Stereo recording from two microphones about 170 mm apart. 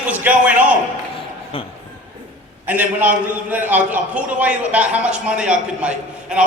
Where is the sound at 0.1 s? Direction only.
10° right (ahead or behind).